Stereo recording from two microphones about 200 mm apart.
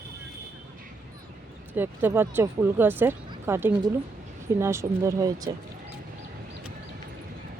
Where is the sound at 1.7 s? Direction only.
10° right (ahead or behind).